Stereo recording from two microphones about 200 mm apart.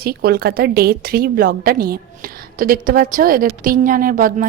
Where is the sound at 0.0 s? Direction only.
50° right (ahead or behind).